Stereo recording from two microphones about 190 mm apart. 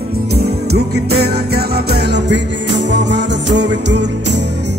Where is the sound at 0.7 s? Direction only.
55° right (ahead or behind).